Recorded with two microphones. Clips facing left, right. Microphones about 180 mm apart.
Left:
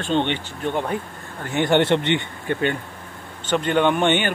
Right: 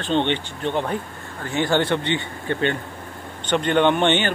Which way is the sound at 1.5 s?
20° left (ahead or behind).